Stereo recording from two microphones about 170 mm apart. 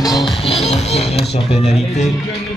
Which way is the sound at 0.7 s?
40° left (ahead or behind).